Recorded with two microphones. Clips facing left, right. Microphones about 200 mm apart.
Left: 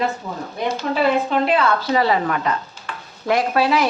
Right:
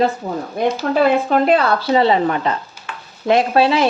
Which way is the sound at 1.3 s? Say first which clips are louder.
Right 3 dB; 40° right (ahead or behind).